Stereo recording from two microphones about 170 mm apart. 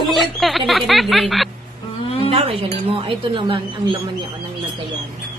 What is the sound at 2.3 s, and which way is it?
A woman's voice, 35° right (ahead or behind).